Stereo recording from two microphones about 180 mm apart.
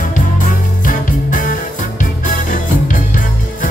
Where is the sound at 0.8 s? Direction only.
45° left (ahead or behind).